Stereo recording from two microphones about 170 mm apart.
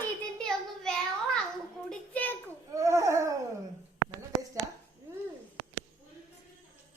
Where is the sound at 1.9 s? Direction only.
10° left (ahead or behind).